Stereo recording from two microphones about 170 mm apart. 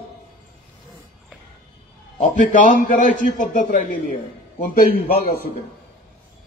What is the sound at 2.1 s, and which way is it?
A man's voice, 50° left (ahead or behind).